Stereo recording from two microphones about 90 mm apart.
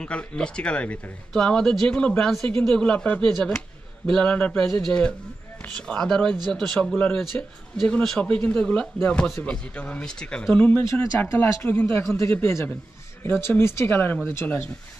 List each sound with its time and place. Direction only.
0.0 s speech: 10° left (ahead or behind)
7.3 s speech: 20° left (ahead or behind)
7.7 s speech: 5° left (ahead or behind); by 14.7 s 25° left (ahead or behind)